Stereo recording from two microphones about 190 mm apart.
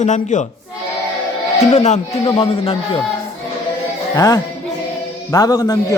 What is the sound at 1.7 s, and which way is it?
Speech, 35° left (ahead or behind).